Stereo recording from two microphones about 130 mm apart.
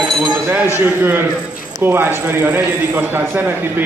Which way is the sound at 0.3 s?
10° right (ahead or behind).